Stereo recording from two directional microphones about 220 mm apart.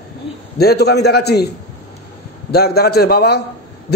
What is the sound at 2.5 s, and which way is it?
Speech, 45° left (ahead or behind).